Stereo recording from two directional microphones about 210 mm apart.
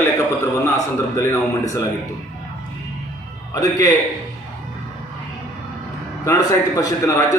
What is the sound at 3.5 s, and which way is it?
Speech, 15° left (ahead or behind).